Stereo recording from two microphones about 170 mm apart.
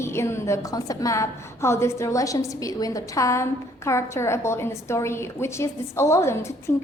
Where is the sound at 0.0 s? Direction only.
15° left (ahead or behind).